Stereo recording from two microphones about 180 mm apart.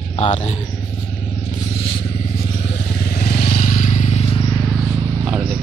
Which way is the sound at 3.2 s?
55° left (ahead or behind).